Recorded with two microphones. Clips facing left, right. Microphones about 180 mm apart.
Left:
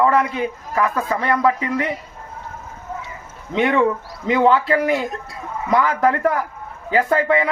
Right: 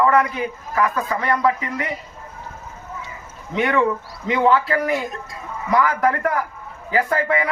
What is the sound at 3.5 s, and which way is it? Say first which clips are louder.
A man's voice: left 2 dB; 25° left (ahead or behind).